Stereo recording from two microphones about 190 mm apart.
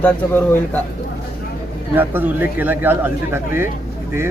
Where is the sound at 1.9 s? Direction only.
10° right (ahead or behind).